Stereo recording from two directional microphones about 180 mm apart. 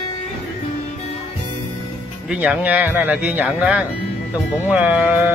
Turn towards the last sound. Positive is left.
turn(degrees=-10)  # may be behind; listen again after turning